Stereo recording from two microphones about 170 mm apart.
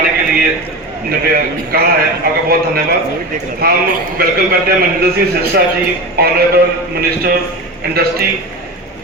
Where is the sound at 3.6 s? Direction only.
65° right (ahead or behind).